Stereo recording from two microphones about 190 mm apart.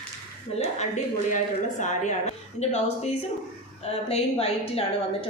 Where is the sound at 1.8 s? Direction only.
40° left (ahead or behind).